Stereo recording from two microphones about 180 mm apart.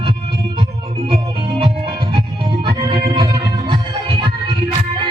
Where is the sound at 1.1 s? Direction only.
25° right (ahead or behind).